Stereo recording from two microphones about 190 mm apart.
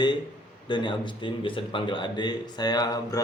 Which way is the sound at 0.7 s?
25° left (ahead or behind).